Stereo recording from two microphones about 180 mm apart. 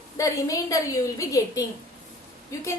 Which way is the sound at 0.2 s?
20° left (ahead or behind).